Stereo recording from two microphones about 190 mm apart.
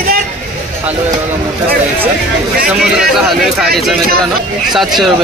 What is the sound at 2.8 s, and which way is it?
Speech, centre (ahead or behind).